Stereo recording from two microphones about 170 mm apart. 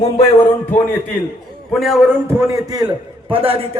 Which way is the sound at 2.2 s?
15° right (ahead or behind).